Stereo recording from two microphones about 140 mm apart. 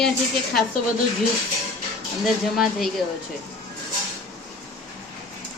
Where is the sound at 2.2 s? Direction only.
Centre (ahead or behind).